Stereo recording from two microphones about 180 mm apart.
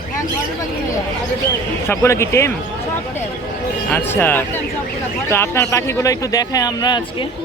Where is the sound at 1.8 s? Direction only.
15° left (ahead or behind).